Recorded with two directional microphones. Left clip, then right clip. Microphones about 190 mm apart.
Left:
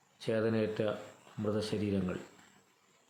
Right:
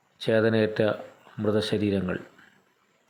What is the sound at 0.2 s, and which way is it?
Speech, 20° right (ahead or behind).